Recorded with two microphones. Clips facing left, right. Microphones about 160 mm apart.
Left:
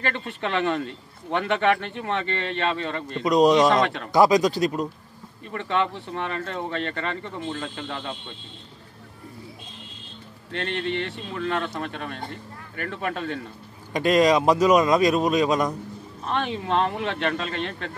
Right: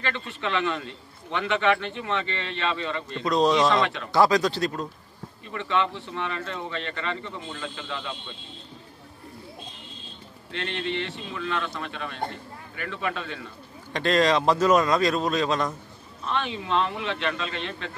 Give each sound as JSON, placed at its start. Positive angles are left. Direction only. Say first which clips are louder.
{"t": 0.0, "sound": "a man's voice", "louder": "left 2 dB", "side_deg": 45}
{"t": 3.3, "sound": "speech", "louder": "left 4 dB", "side_deg": 15}
{"t": 3.6, "sound": "a man's voice", "louder": "left 3 dB", "side_deg": 45}
{"t": 4.1, "sound": "speech", "louder": "left 3 dB", "side_deg": 15}
{"t": 5.5, "sound": "a man's voice", "louder": "left 1 dB", "side_deg": 45}
{"t": 10.5, "sound": "a man's voice", "louder": "left 3 dB", "side_deg": 45}
{"t": 13.9, "sound": "speech", "louder": "left 3 dB", "side_deg": 15}
{"t": 16.3, "sound": "a man's voice", "louder": "left 2 dB", "side_deg": 45}